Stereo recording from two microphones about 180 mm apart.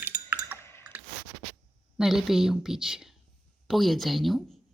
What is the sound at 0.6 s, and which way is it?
Chewing, 15° left (ahead or behind).